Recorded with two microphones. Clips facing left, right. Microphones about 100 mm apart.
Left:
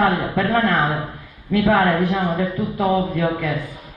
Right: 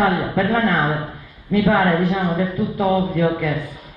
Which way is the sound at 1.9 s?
15° left (ahead or behind).